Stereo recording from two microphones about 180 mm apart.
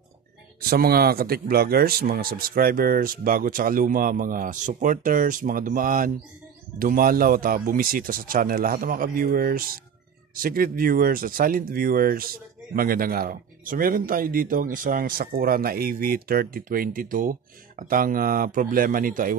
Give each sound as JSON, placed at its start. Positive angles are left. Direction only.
{"t": 0.6, "sound": "speech", "side_deg": -55}